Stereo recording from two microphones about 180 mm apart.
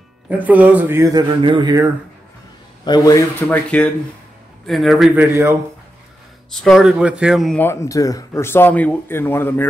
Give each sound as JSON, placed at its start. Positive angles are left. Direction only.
{"t": 0.3, "sound": "speech", "side_deg": -10}
{"t": 2.8, "sound": "a man's voice", "side_deg": 20}
{"t": 3.3, "sound": "speech", "side_deg": 10}
{"t": 6.5, "sound": "speech", "side_deg": 0}
{"t": 7.6, "sound": "speech", "side_deg": 15}